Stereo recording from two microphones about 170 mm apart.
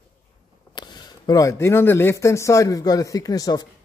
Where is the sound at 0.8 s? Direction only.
25° left (ahead or behind).